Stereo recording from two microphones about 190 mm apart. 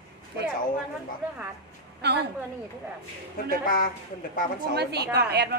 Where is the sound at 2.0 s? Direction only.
60° right (ahead or behind).